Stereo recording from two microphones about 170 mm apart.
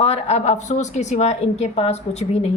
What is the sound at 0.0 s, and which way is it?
A woman's voice, 40° left (ahead or behind).